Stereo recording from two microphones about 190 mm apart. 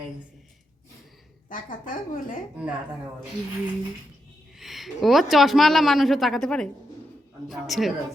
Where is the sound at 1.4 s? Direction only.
45° left (ahead or behind).